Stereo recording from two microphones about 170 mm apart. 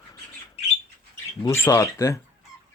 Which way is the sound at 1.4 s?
15° left (ahead or behind).